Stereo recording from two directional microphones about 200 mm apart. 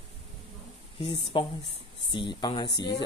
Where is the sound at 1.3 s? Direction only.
25° left (ahead or behind).